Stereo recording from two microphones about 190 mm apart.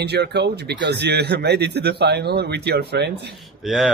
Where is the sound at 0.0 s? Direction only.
60° right (ahead or behind).